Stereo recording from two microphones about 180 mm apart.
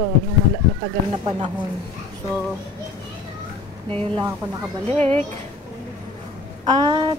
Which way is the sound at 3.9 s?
30° right (ahead or behind).